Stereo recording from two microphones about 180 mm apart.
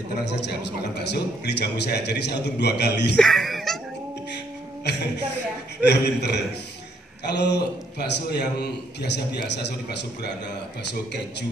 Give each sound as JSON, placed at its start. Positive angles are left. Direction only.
{"t": 0.2, "sound": "a man's voice", "side_deg": 70}
{"t": 3.2, "sound": "music", "side_deg": 0}
{"t": 4.8, "sound": "a man's voice", "side_deg": 70}